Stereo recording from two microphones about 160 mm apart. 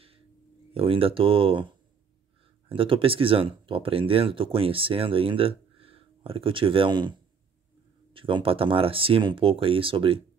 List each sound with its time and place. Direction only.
0.7 s speech: 35° right (ahead or behind)
2.7 s speech: 35° right (ahead or behind)